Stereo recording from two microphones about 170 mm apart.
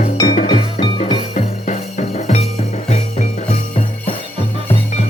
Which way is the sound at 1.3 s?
40° left (ahead or behind).